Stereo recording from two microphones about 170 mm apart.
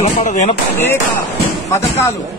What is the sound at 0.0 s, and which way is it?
Speech, 45° left (ahead or behind).